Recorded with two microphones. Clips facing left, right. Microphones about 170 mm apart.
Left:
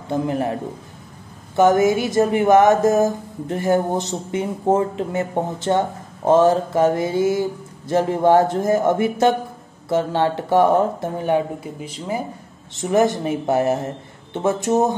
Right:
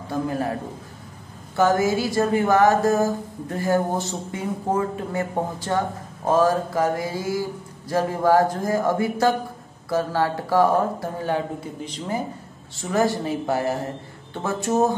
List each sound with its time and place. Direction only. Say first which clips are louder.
0.1 s speech: left 4 dB; 20° left (ahead or behind)
1.6 s speech: left 4 dB; 20° left (ahead or behind)
12.7 s speech: left 4 dB; 20° left (ahead or behind)